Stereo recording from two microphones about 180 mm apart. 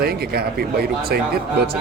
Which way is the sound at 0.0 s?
60° right (ahead or behind).